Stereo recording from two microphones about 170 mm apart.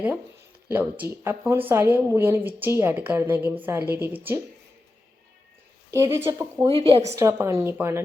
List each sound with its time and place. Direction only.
0.7 s speech: 10° right (ahead or behind)
5.9 s speech: 15° right (ahead or behind)
6.6 s a woman's voice: 35° right (ahead or behind)
7.2 s speech: 15° right (ahead or behind)